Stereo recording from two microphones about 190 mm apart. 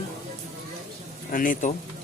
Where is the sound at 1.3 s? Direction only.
45° left (ahead or behind).